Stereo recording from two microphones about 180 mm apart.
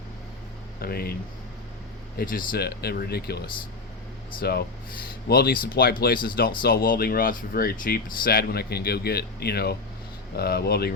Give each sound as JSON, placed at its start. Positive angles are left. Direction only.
{"t": 0.8, "sound": "speech", "side_deg": 60}
{"t": 2.1, "sound": "speech", "side_deg": 50}